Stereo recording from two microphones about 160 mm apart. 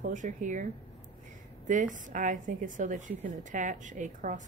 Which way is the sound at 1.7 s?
55° right (ahead or behind).